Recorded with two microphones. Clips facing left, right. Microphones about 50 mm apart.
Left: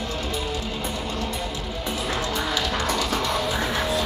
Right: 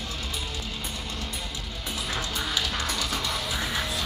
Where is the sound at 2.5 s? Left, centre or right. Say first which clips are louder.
Left 4 dB; centre.